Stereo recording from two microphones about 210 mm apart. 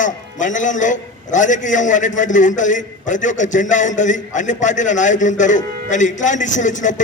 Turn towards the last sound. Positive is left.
turn(degrees=35)  # may be behind; listen again after turning